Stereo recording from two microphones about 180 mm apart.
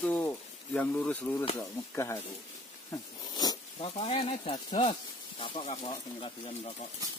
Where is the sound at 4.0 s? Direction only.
35° left (ahead or behind).